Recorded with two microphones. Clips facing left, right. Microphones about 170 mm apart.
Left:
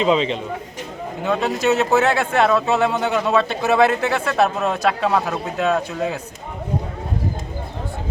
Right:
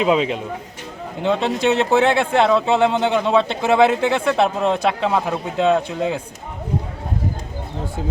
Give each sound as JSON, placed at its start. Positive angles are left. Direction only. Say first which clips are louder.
{"t": 0.0, "sound": "speech", "louder": "even", "side_deg": -5}
{"t": 1.2, "sound": "speech", "louder": "right 2 dB", "side_deg": -25}